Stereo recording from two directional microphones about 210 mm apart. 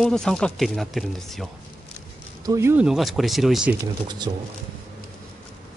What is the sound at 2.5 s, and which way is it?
Speech, 10° right (ahead or behind).